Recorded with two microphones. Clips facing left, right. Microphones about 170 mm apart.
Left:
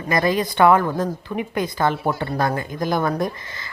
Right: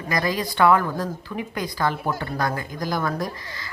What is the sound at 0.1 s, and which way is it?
A woman's voice, 25° left (ahead or behind).